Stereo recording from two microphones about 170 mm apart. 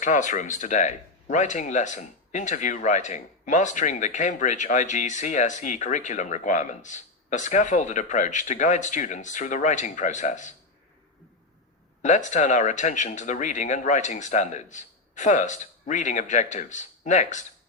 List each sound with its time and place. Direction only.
0.0 s speech: 45° left (ahead or behind)
12.0 s speech: 45° left (ahead or behind)